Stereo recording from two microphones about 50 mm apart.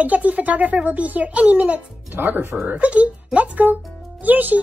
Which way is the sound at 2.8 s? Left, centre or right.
Right.